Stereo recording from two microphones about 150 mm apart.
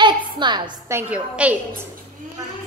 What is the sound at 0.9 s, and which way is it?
Speech, 10° right (ahead or behind).